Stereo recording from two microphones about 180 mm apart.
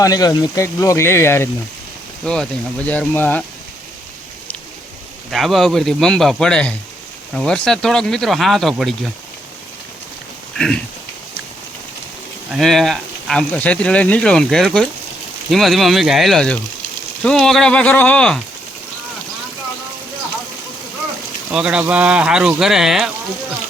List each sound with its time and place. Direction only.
0.0 s speech: 20° left (ahead or behind)
5.3 s speech: centre (ahead or behind)
12.5 s speech: centre (ahead or behind)
21.5 s speech: 5° right (ahead or behind)